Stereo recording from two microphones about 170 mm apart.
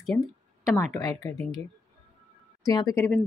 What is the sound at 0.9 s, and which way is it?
Speech, 15° left (ahead or behind).